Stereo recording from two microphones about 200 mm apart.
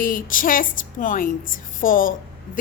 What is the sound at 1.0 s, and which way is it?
Speech, 40° left (ahead or behind).